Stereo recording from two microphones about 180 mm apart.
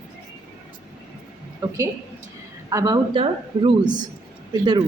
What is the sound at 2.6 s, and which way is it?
Speech, 20° right (ahead or behind).